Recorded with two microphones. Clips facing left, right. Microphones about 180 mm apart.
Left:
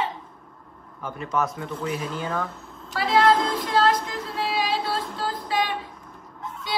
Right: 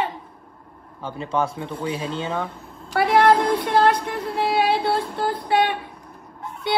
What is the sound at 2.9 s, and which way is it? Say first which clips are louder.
Speech: right 3 dB; 60° right (ahead or behind).